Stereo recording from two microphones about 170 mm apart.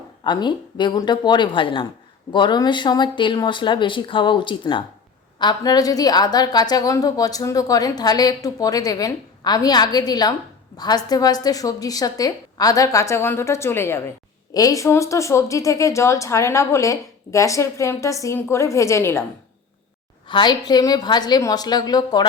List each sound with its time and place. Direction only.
0.3 s a woman's voice: 25° left (ahead or behind)
20.2 s a woman's voice: 25° left (ahead or behind)